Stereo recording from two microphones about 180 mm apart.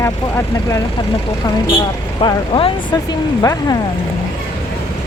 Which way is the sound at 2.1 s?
25° left (ahead or behind).